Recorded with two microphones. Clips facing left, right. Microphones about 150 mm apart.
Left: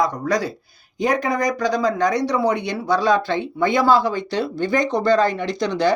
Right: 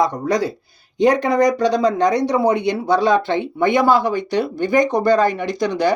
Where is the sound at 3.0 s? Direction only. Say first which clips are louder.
Right 2 dB; 20° right (ahead or behind).